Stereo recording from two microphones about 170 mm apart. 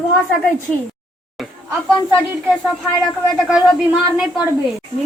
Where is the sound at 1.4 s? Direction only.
Centre (ahead or behind).